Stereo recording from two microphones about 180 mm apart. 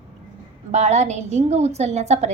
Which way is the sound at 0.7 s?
40° right (ahead or behind).